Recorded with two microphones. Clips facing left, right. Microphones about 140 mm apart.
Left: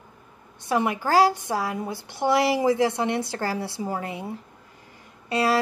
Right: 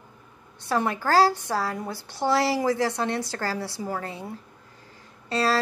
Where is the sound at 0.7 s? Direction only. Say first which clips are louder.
Left 1 dB; 15° left (ahead or behind).